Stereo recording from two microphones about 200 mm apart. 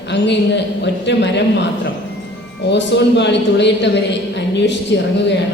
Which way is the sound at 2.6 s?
60° left (ahead or behind).